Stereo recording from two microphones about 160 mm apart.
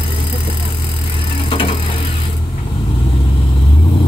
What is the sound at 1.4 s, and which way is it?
Vehicle, 30° left (ahead or behind).